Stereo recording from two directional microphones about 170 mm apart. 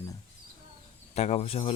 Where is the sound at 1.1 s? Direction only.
40° left (ahead or behind).